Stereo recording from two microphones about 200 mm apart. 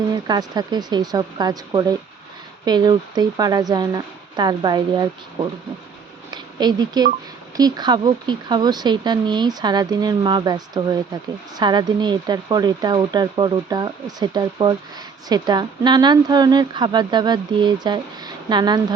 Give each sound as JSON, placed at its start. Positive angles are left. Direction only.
{"t": 0.1, "sound": "speech", "side_deg": -20}